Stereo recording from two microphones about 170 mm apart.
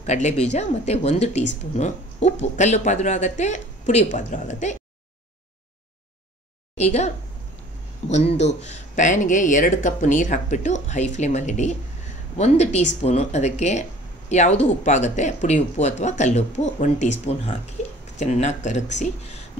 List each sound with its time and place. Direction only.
0.0 s speech: 40° left (ahead or behind)
6.8 s speech: 40° left (ahead or behind)
8.1 s speech: 40° left (ahead or behind)